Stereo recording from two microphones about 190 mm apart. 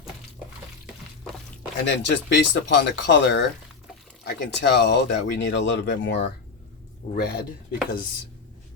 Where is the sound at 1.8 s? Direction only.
65° left (ahead or behind).